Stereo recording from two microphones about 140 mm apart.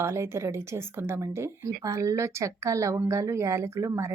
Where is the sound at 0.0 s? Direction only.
20° right (ahead or behind).